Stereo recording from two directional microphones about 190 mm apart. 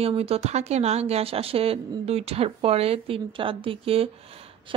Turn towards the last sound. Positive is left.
turn(degrees=-30)  # may be behind; listen again after turning